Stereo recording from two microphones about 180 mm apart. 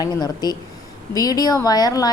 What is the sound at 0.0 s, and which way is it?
A woman's voice, 20° left (ahead or behind).